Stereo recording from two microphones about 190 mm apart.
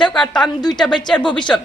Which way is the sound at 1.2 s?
25° left (ahead or behind).